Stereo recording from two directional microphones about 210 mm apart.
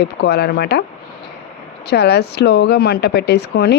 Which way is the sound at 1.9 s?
50° left (ahead or behind).